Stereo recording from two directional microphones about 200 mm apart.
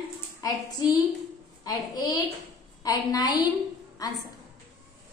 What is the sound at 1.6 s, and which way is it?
A woman's voice, 20° left (ahead or behind).